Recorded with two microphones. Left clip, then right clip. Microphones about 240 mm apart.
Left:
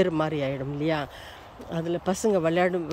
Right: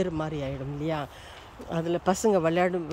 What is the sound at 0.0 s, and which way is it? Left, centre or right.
Speech, centre.